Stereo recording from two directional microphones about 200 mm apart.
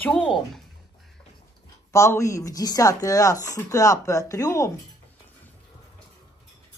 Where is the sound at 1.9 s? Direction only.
15° left (ahead or behind).